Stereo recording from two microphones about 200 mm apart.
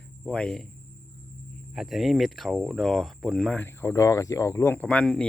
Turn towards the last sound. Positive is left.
turn(degrees=5)  # may be behind; listen again after turning